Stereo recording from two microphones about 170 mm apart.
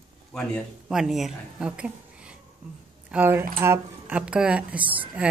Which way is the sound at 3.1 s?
10° right (ahead or behind).